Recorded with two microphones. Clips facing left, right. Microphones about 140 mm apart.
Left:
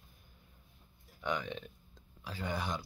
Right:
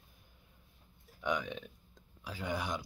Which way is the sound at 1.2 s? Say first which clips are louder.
Right 1 dB; 10° right (ahead or behind).